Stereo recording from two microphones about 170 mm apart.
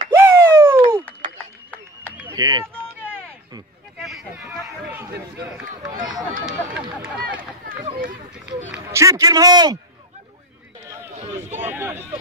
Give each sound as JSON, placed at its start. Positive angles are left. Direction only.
{"t": 0.1, "sound": "a sound", "side_deg": -15}
{"t": 2.3, "sound": "a man's voice", "side_deg": -20}
{"t": 4.0, "sound": "a sound", "side_deg": 0}
{"t": 4.6, "sound": "speech", "side_deg": -5}
{"t": 7.3, "sound": "speech", "side_deg": -55}
{"t": 8.8, "sound": "a man's voice", "side_deg": -20}
{"t": 11.1, "sound": "speech", "side_deg": -40}
{"t": 11.5, "sound": "speech", "side_deg": -10}